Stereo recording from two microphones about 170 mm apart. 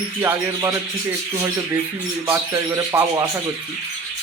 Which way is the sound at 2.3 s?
15° right (ahead or behind).